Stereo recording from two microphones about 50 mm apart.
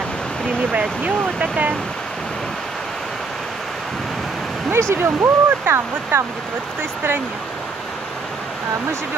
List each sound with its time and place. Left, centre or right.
0.7 s speech: right
4.7 s speech: right